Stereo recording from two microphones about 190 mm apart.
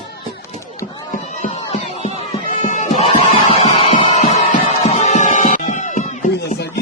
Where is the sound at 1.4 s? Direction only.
35° left (ahead or behind).